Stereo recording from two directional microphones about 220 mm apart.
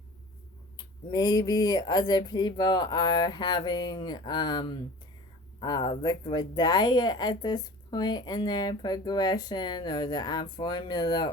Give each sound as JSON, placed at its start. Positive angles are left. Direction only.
{"t": 1.1, "sound": "a woman's voice", "side_deg": 20}